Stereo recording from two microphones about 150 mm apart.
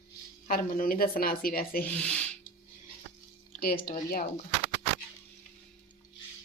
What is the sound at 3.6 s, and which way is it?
Speech, 90° left.